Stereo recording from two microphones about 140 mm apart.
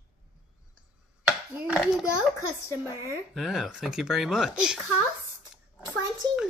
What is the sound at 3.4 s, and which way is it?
A woman's voice, 5° right (ahead or behind).